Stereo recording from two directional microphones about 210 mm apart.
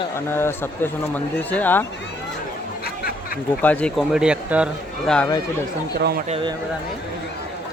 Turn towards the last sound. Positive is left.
turn(degrees=-30)  # may be behind; listen again after turning